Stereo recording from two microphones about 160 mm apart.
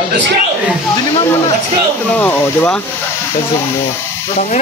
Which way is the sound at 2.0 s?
10° left (ahead or behind).